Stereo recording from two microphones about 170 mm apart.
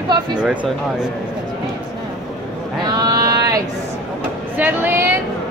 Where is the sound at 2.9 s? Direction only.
25° right (ahead or behind).